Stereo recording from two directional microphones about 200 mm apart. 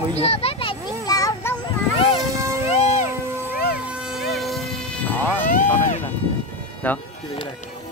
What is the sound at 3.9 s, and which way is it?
Siren, 5° right (ahead or behind).